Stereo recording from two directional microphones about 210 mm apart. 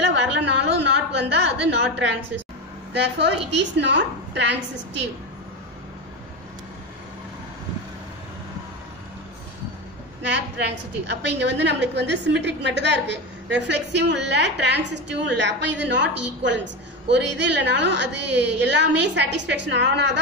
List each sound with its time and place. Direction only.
0.4 s a sound: 55° right (ahead or behind)
2.9 s a woman's voice: 55° right (ahead or behind)
10.2 s a woman's voice: 55° right (ahead or behind)